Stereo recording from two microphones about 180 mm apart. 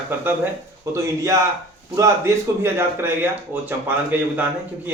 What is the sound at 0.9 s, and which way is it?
Speech, 15° right (ahead or behind).